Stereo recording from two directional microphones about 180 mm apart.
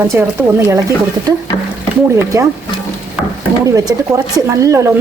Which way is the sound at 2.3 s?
20° right (ahead or behind).